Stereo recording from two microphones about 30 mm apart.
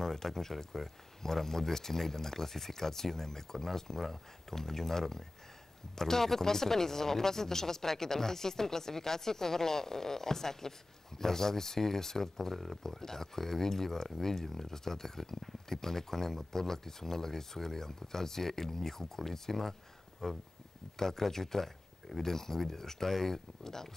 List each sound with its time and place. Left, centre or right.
0.0 s speech: centre